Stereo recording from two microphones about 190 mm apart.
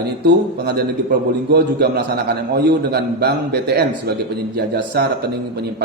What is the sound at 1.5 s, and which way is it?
A man's voice, 55° right (ahead or behind).